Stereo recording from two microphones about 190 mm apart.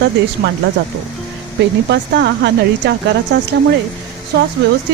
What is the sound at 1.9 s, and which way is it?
A man's voice, 65° right (ahead or behind).